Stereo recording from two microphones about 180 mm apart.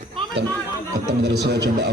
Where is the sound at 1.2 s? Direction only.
65° right (ahead or behind).